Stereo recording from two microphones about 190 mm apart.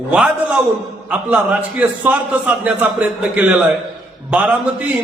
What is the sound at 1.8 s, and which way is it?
A man's voice, 10° right (ahead or behind).